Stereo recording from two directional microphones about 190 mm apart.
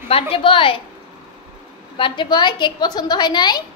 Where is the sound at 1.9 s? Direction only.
25° left (ahead or behind).